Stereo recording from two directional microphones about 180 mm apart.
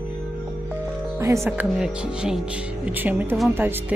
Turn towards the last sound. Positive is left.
turn(degrees=-10)  # may be behind; listen again after turning